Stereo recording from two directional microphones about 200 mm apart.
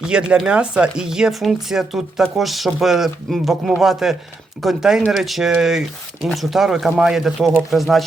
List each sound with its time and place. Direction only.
0.0 s speech: 5° right (ahead or behind)